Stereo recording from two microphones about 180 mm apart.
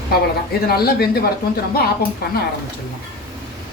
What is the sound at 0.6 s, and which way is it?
Speech, 60° left (ahead or behind).